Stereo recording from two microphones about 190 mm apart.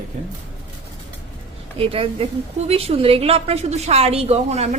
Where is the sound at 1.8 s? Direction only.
30° right (ahead or behind).